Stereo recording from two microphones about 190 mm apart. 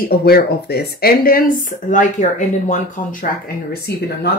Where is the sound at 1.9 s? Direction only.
40° left (ahead or behind).